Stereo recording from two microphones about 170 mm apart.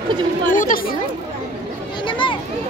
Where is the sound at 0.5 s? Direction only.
50° left (ahead or behind).